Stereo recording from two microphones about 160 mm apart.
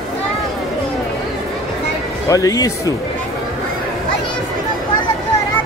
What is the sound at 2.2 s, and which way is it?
Speech, 20° left (ahead or behind).